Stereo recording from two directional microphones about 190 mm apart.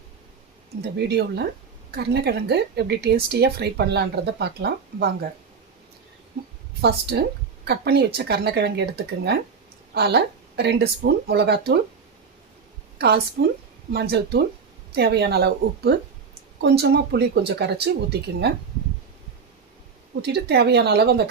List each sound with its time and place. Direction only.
0.9 s speech: 60° right (ahead or behind)
6.8 s speech: 60° right (ahead or behind)
13.0 s a woman's voice: 60° right (ahead or behind)
20.2 s speech: 60° right (ahead or behind)